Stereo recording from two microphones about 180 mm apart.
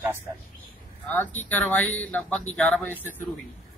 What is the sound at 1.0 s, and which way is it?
Speech, 10° left (ahead or behind).